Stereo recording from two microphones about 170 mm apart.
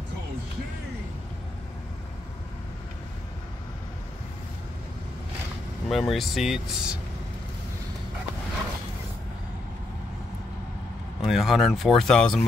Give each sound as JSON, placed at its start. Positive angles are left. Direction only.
{"t": 5.9, "sound": "speech", "side_deg": 0}
{"t": 11.1, "sound": "speech", "side_deg": 0}